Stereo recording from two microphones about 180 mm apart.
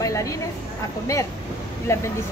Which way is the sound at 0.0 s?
20° left (ahead or behind).